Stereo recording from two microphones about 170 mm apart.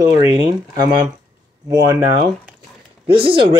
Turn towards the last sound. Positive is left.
turn(degrees=-30)  # may be behind; listen again after turning